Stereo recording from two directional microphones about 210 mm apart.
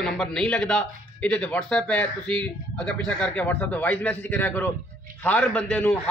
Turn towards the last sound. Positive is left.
turn(degrees=5)  # may be behind; listen again after turning